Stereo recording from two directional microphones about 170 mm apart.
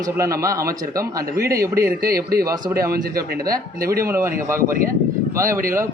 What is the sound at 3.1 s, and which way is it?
Speech, 60° right (ahead or behind).